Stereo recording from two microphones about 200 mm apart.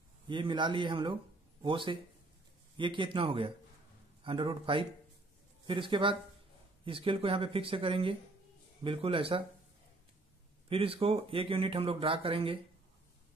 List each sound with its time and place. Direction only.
0.3 s speech: 25° right (ahead or behind)
10.7 s speech: 30° right (ahead or behind)